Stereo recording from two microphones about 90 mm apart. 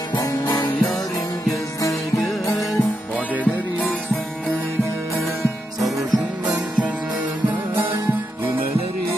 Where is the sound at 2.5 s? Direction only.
Centre (ahead or behind).